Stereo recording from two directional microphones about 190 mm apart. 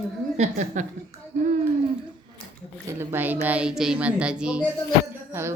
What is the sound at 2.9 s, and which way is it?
Speech, 10° right (ahead or behind).